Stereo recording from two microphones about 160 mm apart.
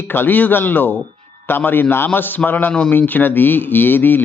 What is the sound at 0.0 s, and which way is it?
Speech, 15° left (ahead or behind).